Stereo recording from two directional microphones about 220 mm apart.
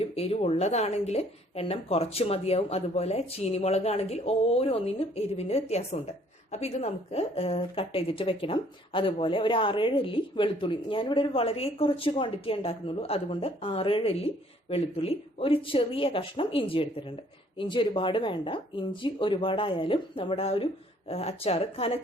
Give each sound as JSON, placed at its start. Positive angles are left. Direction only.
{"t": 0.0, "sound": "a woman's voice", "side_deg": 25}